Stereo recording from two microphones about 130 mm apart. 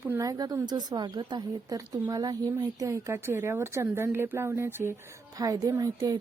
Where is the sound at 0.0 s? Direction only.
15° right (ahead or behind).